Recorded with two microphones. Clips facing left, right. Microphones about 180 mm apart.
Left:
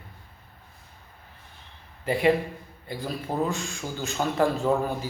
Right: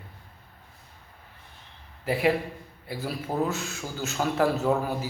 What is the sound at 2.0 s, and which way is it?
A man's voice, 5° right (ahead or behind).